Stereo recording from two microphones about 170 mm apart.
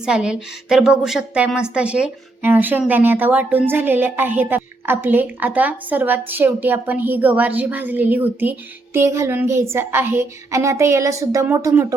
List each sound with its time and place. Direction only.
0.0 s a woman's voice: 5° right (ahead or behind)